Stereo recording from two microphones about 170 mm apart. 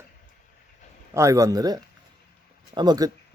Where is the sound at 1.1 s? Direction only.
20° right (ahead or behind).